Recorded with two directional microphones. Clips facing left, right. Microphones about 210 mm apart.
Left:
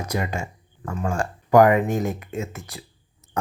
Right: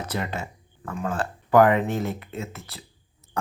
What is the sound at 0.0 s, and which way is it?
Speech, 10° left (ahead or behind).